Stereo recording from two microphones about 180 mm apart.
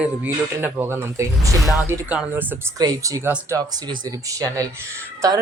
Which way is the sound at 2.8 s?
20° right (ahead or behind).